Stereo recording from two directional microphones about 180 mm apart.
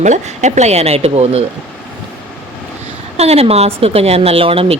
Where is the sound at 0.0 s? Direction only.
40° right (ahead or behind).